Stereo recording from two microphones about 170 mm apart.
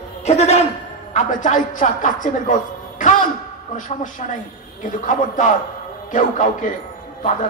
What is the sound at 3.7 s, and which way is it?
A woman's voice, 50° left (ahead or behind).